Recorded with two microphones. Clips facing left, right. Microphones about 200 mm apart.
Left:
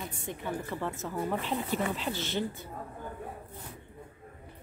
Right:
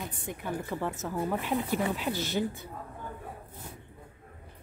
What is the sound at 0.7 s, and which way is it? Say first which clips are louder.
Speech: right 2 dB; 15° right (ahead or behind).